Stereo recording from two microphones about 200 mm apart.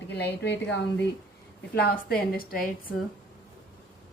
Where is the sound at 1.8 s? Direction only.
45° left (ahead or behind).